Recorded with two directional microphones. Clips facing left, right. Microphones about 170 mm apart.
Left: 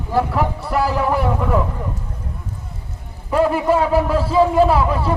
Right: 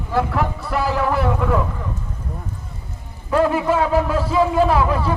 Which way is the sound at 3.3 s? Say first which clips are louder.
Left 1 dB; 5° left (ahead or behind).